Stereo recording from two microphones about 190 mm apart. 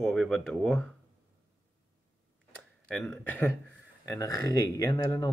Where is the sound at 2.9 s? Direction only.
5° left (ahead or behind).